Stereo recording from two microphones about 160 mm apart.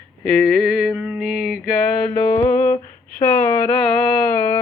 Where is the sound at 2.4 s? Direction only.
10° left (ahead or behind).